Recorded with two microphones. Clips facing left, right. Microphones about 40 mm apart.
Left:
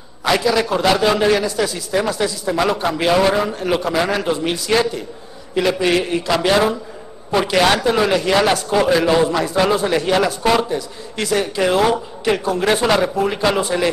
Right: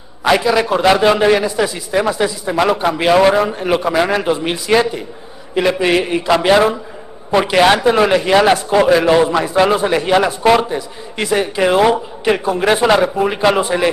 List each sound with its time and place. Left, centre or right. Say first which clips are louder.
0.3 s a man's voice: right 3 dB; right